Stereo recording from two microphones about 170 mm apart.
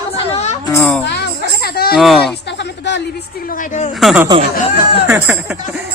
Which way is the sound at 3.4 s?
50° left (ahead or behind).